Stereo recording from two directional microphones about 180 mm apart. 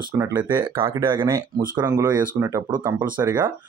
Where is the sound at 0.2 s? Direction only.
10° right (ahead or behind).